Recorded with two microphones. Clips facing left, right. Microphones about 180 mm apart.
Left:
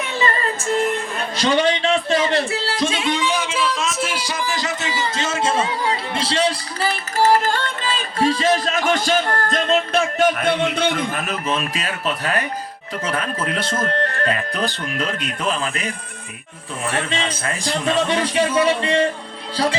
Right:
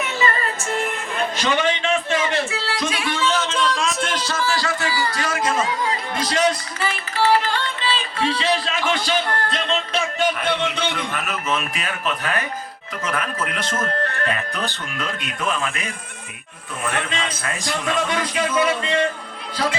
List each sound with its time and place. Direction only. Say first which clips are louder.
1.4 s music: left 5 dB; 35° left (ahead or behind)
13.1 s speech: left 2 dB; 30° left (ahead or behind)
16.9 s speech: left 4 dB; 30° left (ahead or behind)